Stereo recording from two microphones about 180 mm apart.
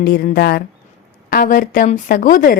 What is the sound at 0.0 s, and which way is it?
A woman's voice, 60° left (ahead or behind).